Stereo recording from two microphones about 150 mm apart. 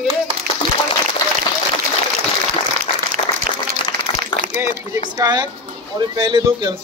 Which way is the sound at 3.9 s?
90° right.